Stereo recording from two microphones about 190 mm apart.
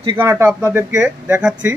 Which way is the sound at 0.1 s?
10° right (ahead or behind).